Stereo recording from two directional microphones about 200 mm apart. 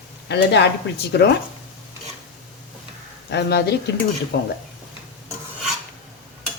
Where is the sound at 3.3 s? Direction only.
55° left (ahead or behind).